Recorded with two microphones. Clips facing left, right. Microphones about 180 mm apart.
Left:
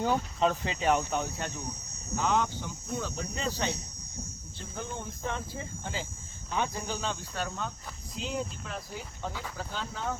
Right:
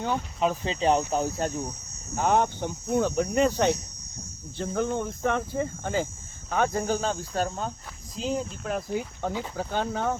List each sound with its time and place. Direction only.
0.0 s speech: 5° left (ahead or behind)
0.4 s speech: 15° right (ahead or behind); by 1.5 s 35° right (ahead or behind)
2.1 s speech: 55° right (ahead or behind)
8.7 s speech: 55° right (ahead or behind)